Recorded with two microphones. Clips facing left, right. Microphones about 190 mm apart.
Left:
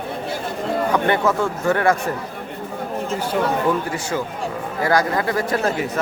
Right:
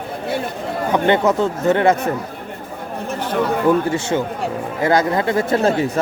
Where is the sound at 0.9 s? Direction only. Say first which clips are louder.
Right 5 dB; 20° right (ahead or behind).